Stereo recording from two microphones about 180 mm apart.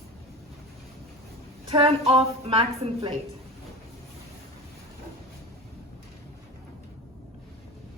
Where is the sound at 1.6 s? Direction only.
30° right (ahead or behind).